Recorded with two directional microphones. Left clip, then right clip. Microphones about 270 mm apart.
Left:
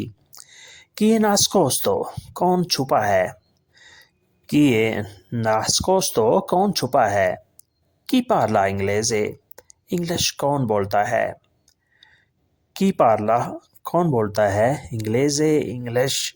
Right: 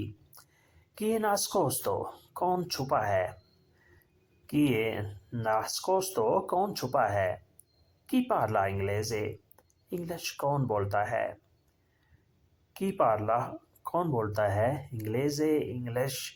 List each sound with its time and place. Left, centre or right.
0.0 s speech: left
4.4 s speech: left
12.7 s speech: left